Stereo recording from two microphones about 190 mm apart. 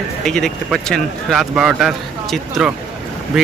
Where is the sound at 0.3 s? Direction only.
Centre (ahead or behind).